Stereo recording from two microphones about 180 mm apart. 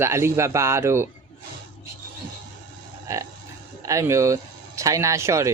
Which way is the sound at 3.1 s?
15° right (ahead or behind).